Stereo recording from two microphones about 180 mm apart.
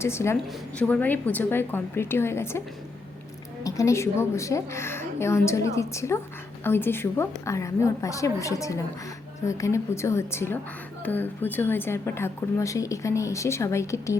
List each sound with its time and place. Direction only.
0.0 s a woman's voice: 15° left (ahead or behind)
3.6 s a woman's voice: 15° left (ahead or behind)